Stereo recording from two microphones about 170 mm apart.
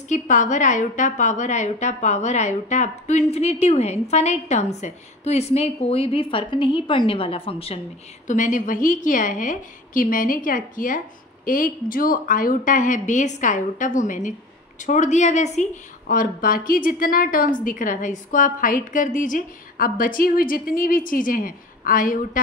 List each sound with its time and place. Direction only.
0.1 s a woman's voice: 45° left (ahead or behind)
8.3 s a woman's voice: 50° left (ahead or behind)